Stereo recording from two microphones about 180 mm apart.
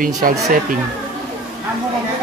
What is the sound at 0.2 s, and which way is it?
Speech, 50° right (ahead or behind).